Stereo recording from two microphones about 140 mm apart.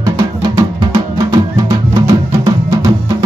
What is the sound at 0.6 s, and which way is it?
Music, 25° right (ahead or behind).